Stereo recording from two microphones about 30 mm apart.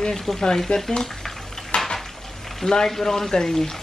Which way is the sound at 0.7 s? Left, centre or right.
Left.